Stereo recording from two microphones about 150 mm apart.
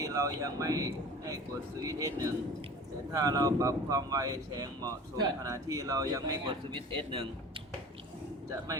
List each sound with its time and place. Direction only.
0.0 s speech: 20° right (ahead or behind)
7.1 s speech: 35° right (ahead or behind)
8.4 s speech: 20° right (ahead or behind)